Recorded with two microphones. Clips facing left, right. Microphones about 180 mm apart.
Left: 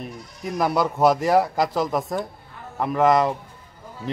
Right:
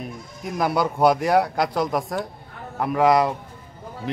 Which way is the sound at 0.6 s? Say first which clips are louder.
Even; centre (ahead or behind).